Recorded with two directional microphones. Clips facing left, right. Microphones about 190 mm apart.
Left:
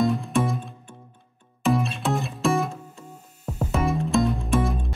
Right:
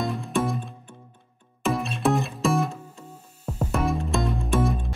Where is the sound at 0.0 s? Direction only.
Centre (ahead or behind).